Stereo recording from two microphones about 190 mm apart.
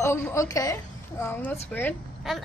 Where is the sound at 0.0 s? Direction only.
15° left (ahead or behind).